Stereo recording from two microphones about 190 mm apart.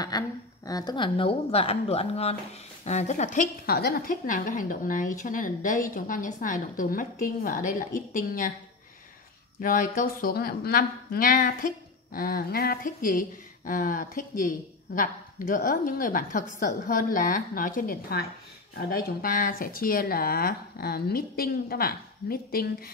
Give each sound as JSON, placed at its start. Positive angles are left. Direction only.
{"t": 0.1, "sound": "a woman's voice", "side_deg": 20}
{"t": 9.6, "sound": "speech", "side_deg": 45}